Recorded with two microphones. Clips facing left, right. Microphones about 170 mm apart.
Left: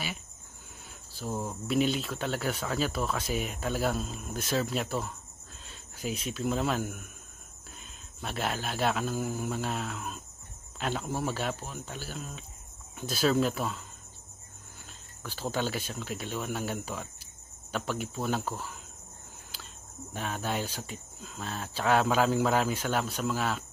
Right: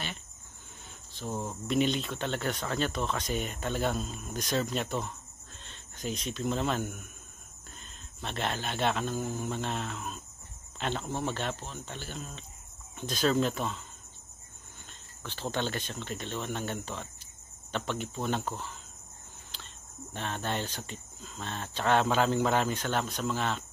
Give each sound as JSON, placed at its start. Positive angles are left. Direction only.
{"t": 1.1, "sound": "speech", "side_deg": 5}
{"t": 15.2, "sound": "speech", "side_deg": 5}